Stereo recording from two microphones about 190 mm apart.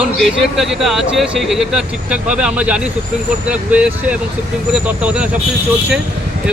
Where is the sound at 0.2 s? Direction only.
Centre (ahead or behind).